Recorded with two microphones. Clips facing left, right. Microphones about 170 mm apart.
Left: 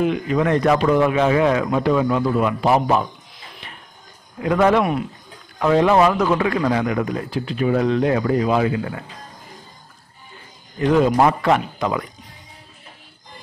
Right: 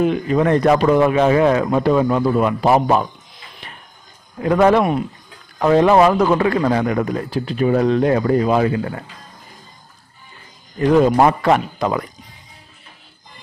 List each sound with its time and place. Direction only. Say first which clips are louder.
0.0 s a man's voice: right 3 dB; 40° right (ahead or behind)
4.4 s a man's voice: right 3 dB; 40° right (ahead or behind)
10.8 s a man's voice: right 3 dB; 40° right (ahead or behind)